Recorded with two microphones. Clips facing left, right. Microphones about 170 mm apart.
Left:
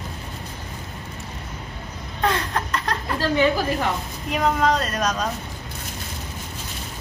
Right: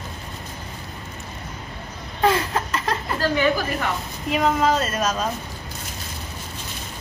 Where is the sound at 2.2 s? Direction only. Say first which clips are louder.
Right 3 dB; 5° right (ahead or behind).